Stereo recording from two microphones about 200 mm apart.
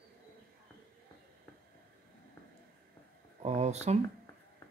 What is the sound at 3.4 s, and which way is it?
Speech, 35° right (ahead or behind).